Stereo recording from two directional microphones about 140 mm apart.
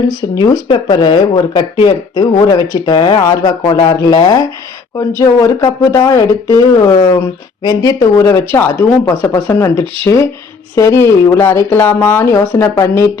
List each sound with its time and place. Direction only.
0.1 s speech: 25° left (ahead or behind)